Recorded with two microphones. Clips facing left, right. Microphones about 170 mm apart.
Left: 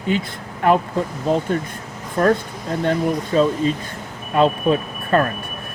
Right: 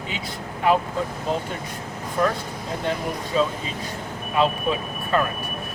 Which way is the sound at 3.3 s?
50° left (ahead or behind).